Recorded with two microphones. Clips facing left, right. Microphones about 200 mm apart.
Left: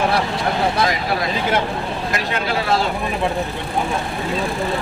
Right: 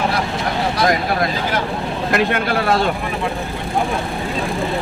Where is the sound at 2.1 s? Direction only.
55° right (ahead or behind).